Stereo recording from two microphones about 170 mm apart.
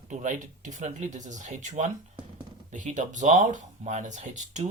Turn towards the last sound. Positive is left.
turn(degrees=-45)  # may be behind; listen again after turning